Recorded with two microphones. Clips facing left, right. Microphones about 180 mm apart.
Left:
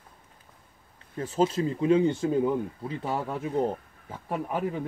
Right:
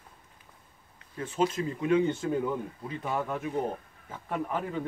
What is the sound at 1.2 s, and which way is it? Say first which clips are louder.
Speech: left 3 dB; 35° left (ahead or behind).